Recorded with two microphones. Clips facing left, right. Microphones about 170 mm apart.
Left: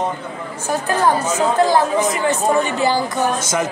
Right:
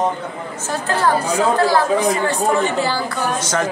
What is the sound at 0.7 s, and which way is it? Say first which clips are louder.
A man's voice: left 1 dB; 15° left (ahead or behind).